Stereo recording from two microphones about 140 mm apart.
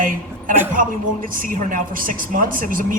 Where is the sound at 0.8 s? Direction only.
85° right.